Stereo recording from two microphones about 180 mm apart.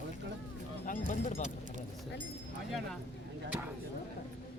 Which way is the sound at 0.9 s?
40° left (ahead or behind).